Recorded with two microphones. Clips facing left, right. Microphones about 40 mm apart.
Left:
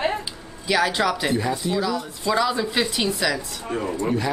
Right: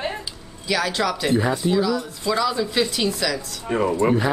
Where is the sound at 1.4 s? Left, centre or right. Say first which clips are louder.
Right 3 dB; right.